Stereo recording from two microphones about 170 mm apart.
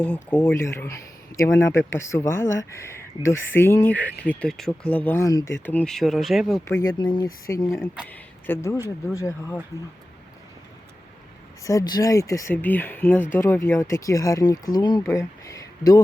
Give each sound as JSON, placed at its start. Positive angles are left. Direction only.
{"t": 0.0, "sound": "speech", "side_deg": 10}
{"t": 6.7, "sound": "speech", "side_deg": 20}
{"t": 11.6, "sound": "speech", "side_deg": 20}